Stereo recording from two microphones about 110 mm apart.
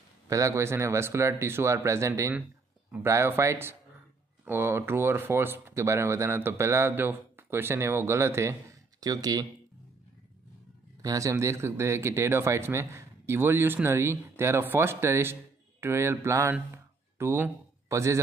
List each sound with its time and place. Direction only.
0.3 s speech: 30° right (ahead or behind)
11.0 s speech: 30° right (ahead or behind)
16.7 s a sound: 20° right (ahead or behind)